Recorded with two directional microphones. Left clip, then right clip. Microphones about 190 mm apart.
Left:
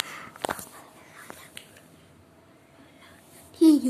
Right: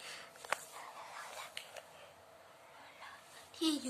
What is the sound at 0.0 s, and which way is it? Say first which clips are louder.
Walk: left 14 dB; 20° right (ahead or behind).